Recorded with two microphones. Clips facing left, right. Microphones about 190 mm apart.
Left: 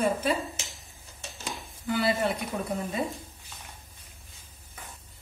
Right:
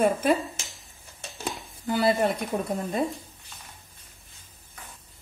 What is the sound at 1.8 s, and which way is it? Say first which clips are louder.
Speech: right 3 dB; 40° right (ahead or behind).